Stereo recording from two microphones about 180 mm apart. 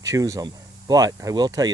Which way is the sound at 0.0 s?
20° right (ahead or behind).